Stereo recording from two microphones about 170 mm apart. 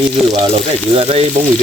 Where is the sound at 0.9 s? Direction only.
35° right (ahead or behind).